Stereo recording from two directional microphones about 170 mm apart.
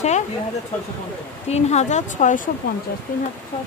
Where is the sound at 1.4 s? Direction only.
40° left (ahead or behind).